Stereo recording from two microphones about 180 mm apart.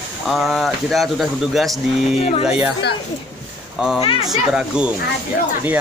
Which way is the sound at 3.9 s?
30° left (ahead or behind).